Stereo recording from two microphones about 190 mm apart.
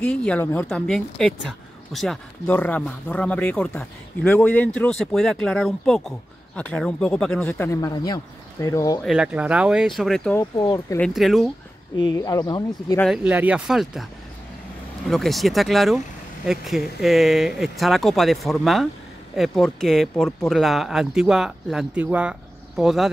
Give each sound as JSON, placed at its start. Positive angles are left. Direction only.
{"t": 0.0, "sound": "speech", "side_deg": 5}
{"t": 9.0, "sound": "speech", "side_deg": -5}
{"t": 10.6, "sound": "speech", "side_deg": 25}
{"t": 11.0, "sound": "speech", "side_deg": 0}
{"t": 12.0, "sound": "speech", "side_deg": 20}
{"t": 13.0, "sound": "speech", "side_deg": -5}
{"t": 15.0, "sound": "speech", "side_deg": 0}